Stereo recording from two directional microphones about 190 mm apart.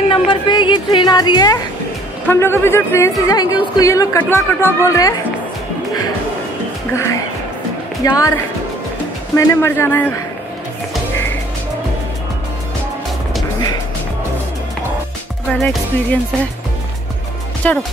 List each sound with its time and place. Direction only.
0.1 s a woman's voice: 25° left (ahead or behind)
6.9 s speech: 15° left (ahead or behind)
9.3 s speech: 15° left (ahead or behind)
15.6 s speech: centre (ahead or behind)
17.6 s speech: 10° left (ahead or behind)